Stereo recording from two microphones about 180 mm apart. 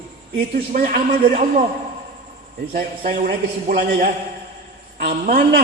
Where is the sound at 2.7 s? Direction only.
55° right (ahead or behind).